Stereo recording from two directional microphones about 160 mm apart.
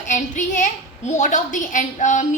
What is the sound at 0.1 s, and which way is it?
A woman's voice, 50° left (ahead or behind).